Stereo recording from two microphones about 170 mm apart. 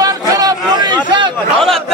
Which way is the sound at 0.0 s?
20° right (ahead or behind).